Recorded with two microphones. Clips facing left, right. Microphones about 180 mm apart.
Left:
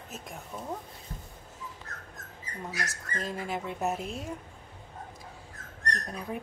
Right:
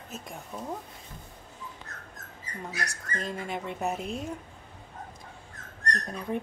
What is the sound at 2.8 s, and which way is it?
Speech, centre (ahead or behind).